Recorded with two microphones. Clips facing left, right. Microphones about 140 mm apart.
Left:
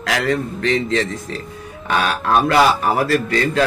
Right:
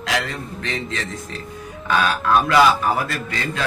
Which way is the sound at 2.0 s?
35° left (ahead or behind).